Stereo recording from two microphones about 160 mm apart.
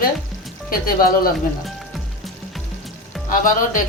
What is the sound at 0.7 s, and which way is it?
Speech, 65° left (ahead or behind).